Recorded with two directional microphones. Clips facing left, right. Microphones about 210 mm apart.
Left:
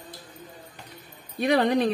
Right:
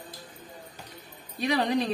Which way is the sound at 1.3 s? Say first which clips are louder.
Left 4 dB; 55° left (ahead or behind).